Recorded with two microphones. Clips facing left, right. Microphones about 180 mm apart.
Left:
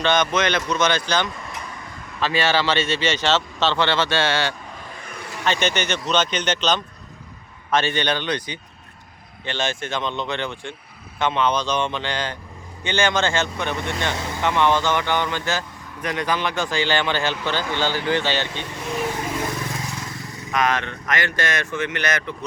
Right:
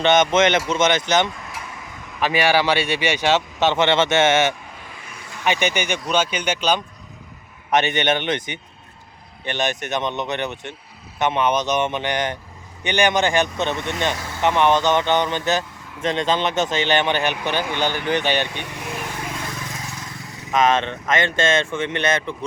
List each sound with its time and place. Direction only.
0.0 s speech: 20° right (ahead or behind)
14.2 s speech: 20° left (ahead or behind)
14.4 s speech: 20° right (ahead or behind)
20.5 s speech: 20° right (ahead or behind)